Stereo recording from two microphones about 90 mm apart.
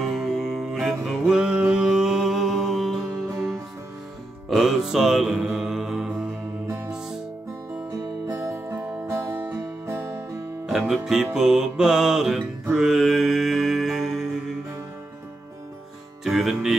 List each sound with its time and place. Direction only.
0.0 s music: centre (ahead or behind)
4.5 s music: centre (ahead or behind)
8.3 s music: 35° right (ahead or behind)
10.7 s music: 5° right (ahead or behind)
12.7 s mantra: 5° right (ahead or behind)
16.3 s music: centre (ahead or behind)